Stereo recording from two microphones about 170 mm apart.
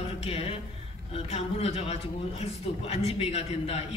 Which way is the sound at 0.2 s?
35° left (ahead or behind).